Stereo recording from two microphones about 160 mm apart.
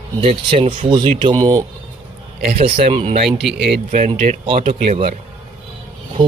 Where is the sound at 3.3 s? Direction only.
Centre (ahead or behind).